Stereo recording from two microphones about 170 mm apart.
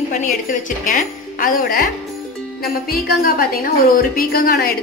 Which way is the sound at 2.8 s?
55° left (ahead or behind).